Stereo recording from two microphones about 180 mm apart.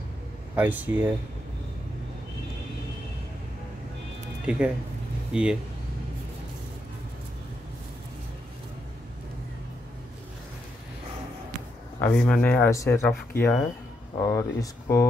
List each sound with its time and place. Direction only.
0.6 s speech: 10° right (ahead or behind)
4.5 s speech: 5° right (ahead or behind)
12.0 s speech: 5° left (ahead or behind)